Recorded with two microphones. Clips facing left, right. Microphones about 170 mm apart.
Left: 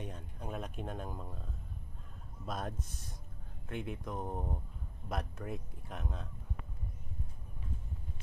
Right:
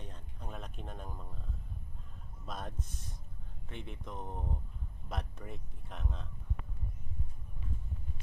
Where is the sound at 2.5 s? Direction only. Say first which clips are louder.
Left 3 dB; 5° left (ahead or behind).